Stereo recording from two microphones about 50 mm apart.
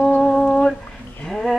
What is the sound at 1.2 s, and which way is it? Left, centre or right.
Livestock, centre.